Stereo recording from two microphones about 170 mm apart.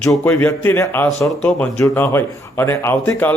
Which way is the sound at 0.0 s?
Centre (ahead or behind).